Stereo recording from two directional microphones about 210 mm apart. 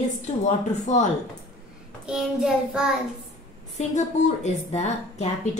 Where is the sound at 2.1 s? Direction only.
5° right (ahead or behind).